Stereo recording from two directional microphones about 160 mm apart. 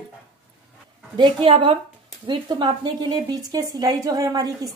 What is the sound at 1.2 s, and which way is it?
A woman's voice, 30° right (ahead or behind).